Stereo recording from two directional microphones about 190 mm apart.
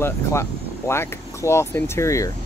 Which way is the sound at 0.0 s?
15° left (ahead or behind).